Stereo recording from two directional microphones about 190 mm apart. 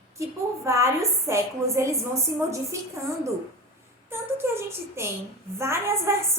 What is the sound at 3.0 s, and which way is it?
Speech, 15° right (ahead or behind).